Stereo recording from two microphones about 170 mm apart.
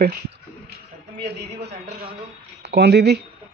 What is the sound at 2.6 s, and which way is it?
Speech, 80° right.